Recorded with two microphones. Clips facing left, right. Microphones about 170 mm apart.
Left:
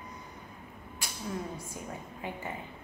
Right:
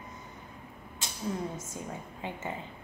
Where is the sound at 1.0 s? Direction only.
20° right (ahead or behind).